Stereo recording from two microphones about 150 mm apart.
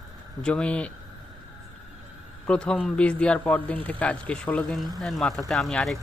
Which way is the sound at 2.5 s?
5° left (ahead or behind).